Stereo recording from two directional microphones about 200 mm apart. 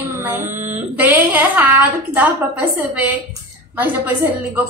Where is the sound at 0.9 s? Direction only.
10° right (ahead or behind).